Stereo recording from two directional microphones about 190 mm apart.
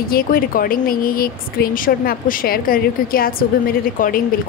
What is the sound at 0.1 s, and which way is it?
Speech, 50° left (ahead or behind).